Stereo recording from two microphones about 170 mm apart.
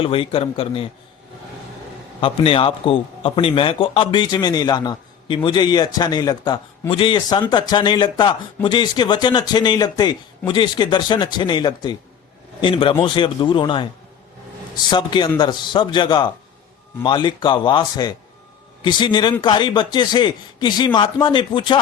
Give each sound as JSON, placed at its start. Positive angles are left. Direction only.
{"t": 0.0, "sound": "a man's voice", "side_deg": 30}
{"t": 2.2, "sound": "speech", "side_deg": 30}
{"t": 14.8, "sound": "speech", "side_deg": 25}